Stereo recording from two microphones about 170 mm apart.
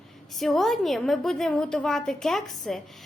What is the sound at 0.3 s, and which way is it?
A woman's voice, centre (ahead or behind).